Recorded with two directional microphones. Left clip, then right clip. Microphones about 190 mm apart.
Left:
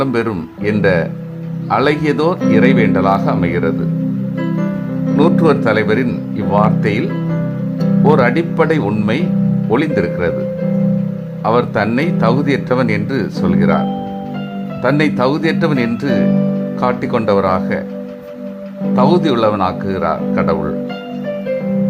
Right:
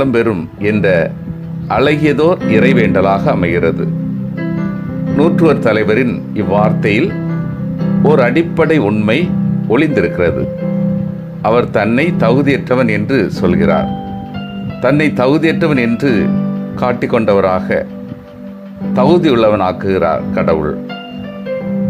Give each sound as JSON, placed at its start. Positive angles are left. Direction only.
{"t": 0.0, "sound": "speech", "side_deg": -15}
{"t": 5.1, "sound": "speech", "side_deg": -15}
{"t": 11.4, "sound": "speech", "side_deg": -15}
{"t": 18.9, "sound": "speech", "side_deg": -15}